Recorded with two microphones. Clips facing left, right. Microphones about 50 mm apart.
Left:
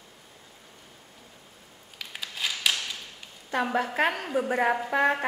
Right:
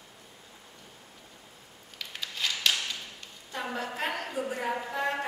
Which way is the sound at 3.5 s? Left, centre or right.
Left.